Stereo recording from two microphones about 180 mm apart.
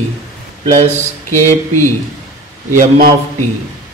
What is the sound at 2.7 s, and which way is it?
Speech, 45° right (ahead or behind).